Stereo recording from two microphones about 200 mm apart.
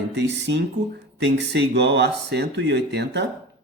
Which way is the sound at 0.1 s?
60° right (ahead or behind).